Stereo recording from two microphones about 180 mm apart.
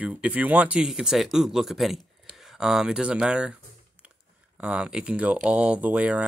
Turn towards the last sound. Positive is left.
turn(degrees=-5)  # may be behind; listen again after turning